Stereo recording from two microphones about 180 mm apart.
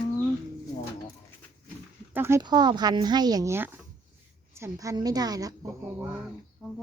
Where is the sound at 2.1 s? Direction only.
15° right (ahead or behind).